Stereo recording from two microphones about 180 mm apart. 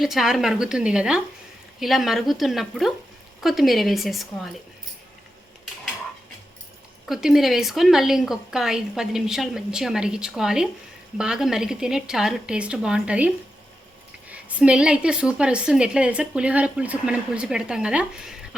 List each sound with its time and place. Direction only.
0.0 s a woman's voice: centre (ahead or behind)
7.1 s a woman's voice: centre (ahead or behind)